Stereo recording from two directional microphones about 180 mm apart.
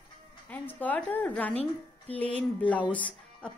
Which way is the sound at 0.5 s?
10° left (ahead or behind).